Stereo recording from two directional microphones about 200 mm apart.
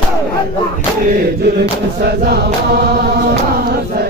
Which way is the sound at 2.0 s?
50° right (ahead or behind).